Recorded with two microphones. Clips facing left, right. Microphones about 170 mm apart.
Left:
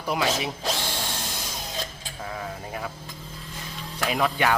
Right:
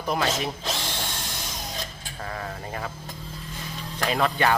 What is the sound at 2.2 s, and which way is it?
Speech, 5° left (ahead or behind).